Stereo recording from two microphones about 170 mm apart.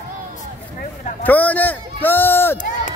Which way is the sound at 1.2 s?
10° left (ahead or behind).